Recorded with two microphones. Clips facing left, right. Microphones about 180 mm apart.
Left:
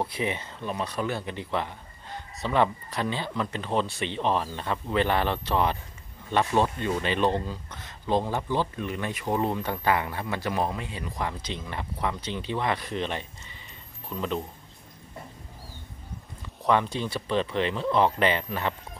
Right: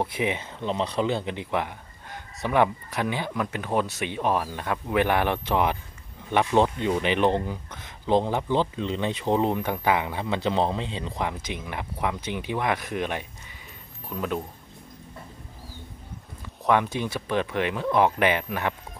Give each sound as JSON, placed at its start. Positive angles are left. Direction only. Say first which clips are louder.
{"t": 0.0, "sound": "speech", "louder": "right 2 dB", "side_deg": -15}
{"t": 16.6, "sound": "speech", "louder": "right 1 dB", "side_deg": -10}